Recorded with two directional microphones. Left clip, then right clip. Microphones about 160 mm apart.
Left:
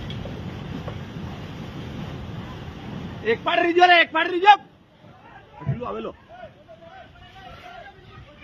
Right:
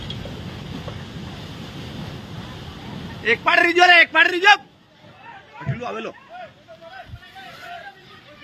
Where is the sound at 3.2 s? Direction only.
20° left (ahead or behind).